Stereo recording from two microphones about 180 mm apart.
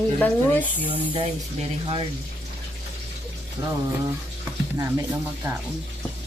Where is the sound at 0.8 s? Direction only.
30° right (ahead or behind).